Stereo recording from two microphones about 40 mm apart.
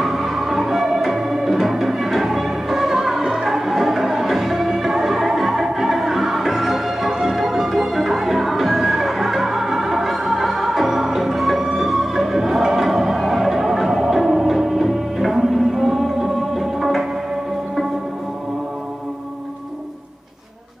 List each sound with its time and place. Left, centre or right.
0.0 s music: centre